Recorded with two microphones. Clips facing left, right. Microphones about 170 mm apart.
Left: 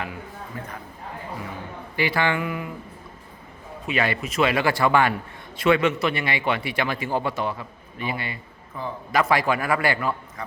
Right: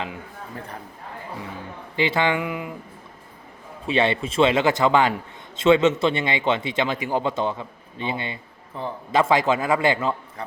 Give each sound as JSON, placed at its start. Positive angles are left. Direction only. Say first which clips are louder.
{"t": 2.0, "sound": "a man's voice", "louder": "right 2 dB", "side_deg": -20}
{"t": 3.8, "sound": "a man's voice", "louder": "right 4 dB", "side_deg": -25}